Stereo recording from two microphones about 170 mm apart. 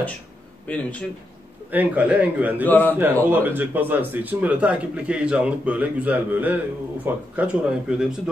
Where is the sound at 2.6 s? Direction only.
10° left (ahead or behind).